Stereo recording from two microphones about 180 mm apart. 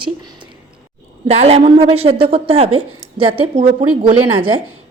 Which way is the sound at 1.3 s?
35° right (ahead or behind).